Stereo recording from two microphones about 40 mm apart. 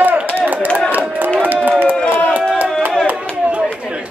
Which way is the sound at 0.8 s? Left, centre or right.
Right.